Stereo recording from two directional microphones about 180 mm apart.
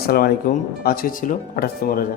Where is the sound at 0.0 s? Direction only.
60° left (ahead or behind).